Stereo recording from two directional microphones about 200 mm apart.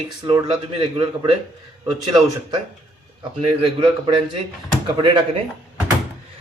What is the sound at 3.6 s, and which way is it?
Speech, 25° right (ahead or behind).